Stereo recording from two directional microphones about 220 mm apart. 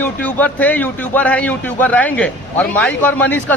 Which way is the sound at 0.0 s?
5° left (ahead or behind).